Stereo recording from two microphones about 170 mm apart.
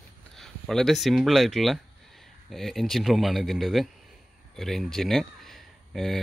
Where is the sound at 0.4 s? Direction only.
Centre (ahead or behind).